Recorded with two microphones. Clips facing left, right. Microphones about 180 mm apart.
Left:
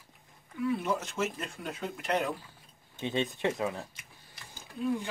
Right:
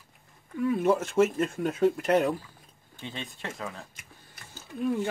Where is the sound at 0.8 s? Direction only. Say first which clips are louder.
Right 9 dB; 50° right (ahead or behind).